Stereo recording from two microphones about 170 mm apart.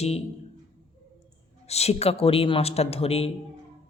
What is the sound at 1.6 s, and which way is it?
Speech, 40° left (ahead or behind).